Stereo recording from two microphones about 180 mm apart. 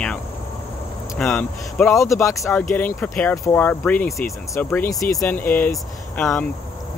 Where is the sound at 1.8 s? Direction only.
15° left (ahead or behind).